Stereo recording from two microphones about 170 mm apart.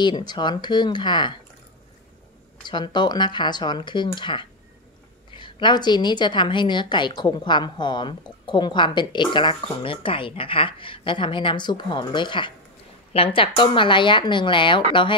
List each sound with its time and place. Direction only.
0.0 s a woman's voice: 25° left (ahead or behind)
2.6 s a woman's voice: 25° left (ahead or behind)